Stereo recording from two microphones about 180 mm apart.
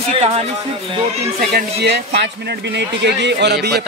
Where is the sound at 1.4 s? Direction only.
65° right (ahead or behind).